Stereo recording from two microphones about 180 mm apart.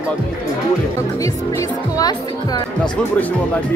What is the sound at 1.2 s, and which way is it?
Speech, 20° left (ahead or behind).